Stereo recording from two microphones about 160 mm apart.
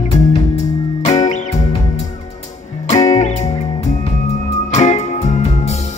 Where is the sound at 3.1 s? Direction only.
45° left (ahead or behind).